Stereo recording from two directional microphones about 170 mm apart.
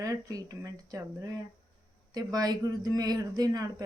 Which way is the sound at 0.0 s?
20° right (ahead or behind).